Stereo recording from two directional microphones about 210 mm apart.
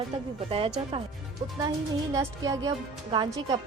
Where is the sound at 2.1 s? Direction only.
15° right (ahead or behind).